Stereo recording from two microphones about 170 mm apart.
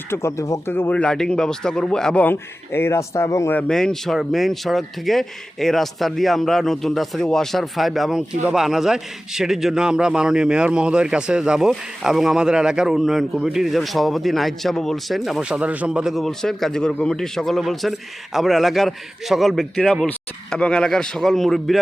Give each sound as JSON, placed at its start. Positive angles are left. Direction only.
{"t": 0.1, "sound": "a man's voice", "side_deg": 15}